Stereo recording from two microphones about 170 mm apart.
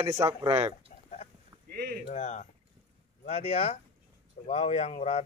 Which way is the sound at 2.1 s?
45° left (ahead or behind).